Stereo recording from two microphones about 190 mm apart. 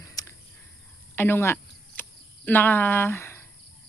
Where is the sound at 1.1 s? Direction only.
10° left (ahead or behind).